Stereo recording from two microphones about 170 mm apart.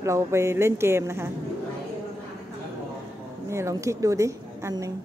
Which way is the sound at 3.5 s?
15° right (ahead or behind).